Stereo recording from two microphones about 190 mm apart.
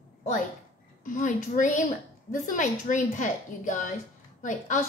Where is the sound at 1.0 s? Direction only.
45° left (ahead or behind).